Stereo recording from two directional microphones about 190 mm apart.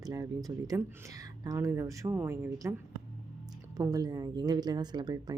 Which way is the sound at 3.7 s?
20° right (ahead or behind).